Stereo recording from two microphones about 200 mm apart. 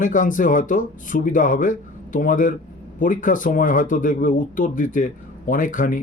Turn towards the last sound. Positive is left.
turn(degrees=40)  # may be behind; listen again after turning